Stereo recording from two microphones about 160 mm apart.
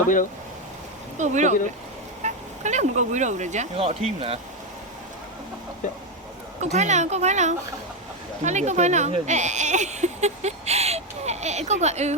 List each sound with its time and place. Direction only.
1.2 s speech: 50° right (ahead or behind)
6.6 s speech: 45° right (ahead or behind)